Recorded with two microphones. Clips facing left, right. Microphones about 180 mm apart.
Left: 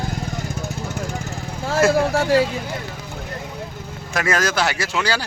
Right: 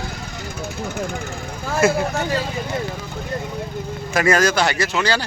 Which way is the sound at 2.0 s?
85° left.